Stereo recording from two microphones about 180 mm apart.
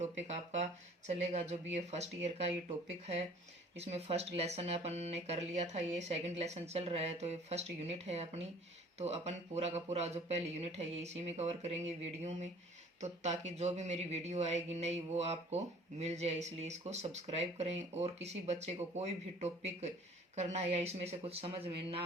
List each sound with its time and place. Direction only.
0.0 s speech: 40° right (ahead or behind)
3.8 s speech: 35° right (ahead or behind)